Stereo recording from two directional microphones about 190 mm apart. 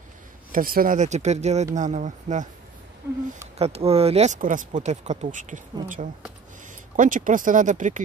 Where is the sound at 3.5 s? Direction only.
30° right (ahead or behind).